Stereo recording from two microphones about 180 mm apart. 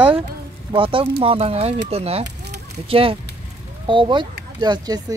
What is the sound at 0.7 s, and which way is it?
Speech, 30° right (ahead or behind).